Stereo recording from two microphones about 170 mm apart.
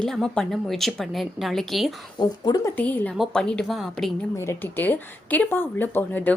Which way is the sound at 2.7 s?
10° left (ahead or behind).